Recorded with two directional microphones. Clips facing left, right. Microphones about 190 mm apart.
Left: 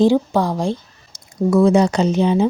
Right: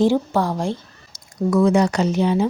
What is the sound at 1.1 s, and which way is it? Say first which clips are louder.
Speech: left 3 dB; 25° left (ahead or behind).